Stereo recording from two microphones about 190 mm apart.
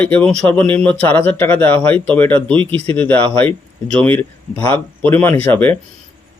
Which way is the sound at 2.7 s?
30° right (ahead or behind).